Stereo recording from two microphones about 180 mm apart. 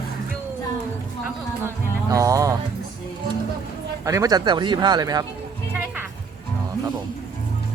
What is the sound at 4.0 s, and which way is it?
Speech, 20° right (ahead or behind).